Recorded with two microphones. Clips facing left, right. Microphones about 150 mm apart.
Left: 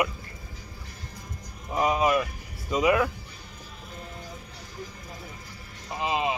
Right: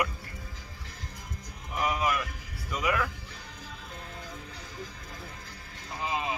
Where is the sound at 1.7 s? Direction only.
25° left (ahead or behind).